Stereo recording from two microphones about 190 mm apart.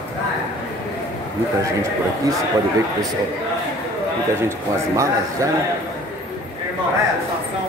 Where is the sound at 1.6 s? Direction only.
15° right (ahead or behind).